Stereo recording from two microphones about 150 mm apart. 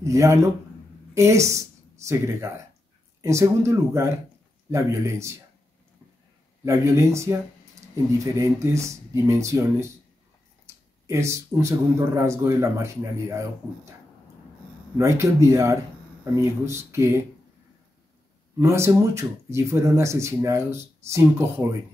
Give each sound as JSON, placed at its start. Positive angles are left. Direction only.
{"t": 0.0, "sound": "speech", "side_deg": -20}
{"t": 6.6, "sound": "speech", "side_deg": -20}
{"t": 11.1, "sound": "speech", "side_deg": -20}
{"t": 15.0, "sound": "speech", "side_deg": -20}
{"t": 18.6, "sound": "speech", "side_deg": -20}